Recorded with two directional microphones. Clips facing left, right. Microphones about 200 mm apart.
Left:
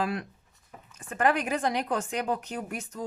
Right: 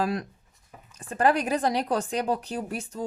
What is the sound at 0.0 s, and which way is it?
A woman's voice, 40° right (ahead or behind).